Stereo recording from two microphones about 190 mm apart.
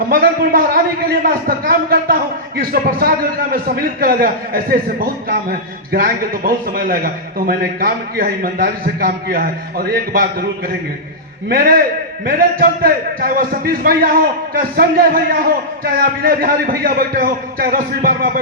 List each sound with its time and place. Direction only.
0.1 s a man's voice: 50° right (ahead or behind)
11.4 s a man's voice: 50° right (ahead or behind)